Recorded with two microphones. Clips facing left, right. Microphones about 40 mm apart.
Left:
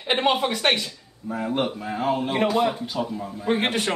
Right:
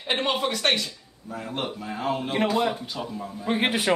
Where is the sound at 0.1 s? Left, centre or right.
Centre.